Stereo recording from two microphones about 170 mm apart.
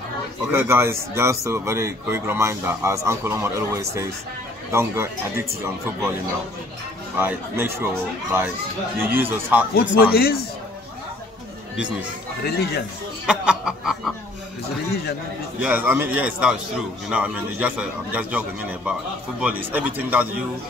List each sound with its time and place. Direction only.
0.5 s speech: 15° right (ahead or behind)
7.2 s speech: 10° right (ahead or behind)
9.8 s speech: 65° left (ahead or behind)
12.4 s speech: 70° left (ahead or behind)
13.3 s snicker: 5° right (ahead or behind)
15.6 s speech: 10° right (ahead or behind)